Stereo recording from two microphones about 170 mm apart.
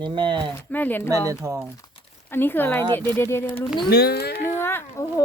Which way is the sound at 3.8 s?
70° left (ahead or behind).